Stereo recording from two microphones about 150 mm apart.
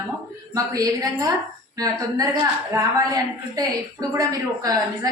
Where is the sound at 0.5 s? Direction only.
25° right (ahead or behind).